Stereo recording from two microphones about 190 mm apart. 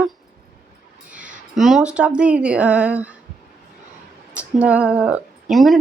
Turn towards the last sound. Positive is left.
turn(degrees=0)  # may be behind; listen again after turning